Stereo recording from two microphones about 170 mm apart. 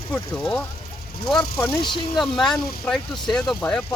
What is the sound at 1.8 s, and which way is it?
Speech, 25° left (ahead or behind).